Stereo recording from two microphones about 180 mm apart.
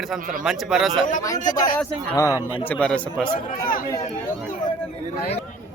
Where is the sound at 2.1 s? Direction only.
15° left (ahead or behind).